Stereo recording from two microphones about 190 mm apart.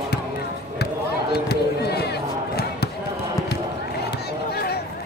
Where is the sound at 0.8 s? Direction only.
55° left (ahead or behind).